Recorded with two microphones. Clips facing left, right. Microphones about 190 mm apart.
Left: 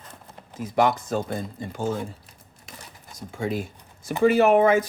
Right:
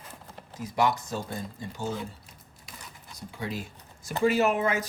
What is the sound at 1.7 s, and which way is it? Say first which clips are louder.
Speech: left 6 dB; 50° left (ahead or behind).